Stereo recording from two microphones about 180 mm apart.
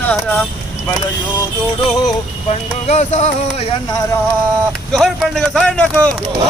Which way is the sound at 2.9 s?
40° left (ahead or behind).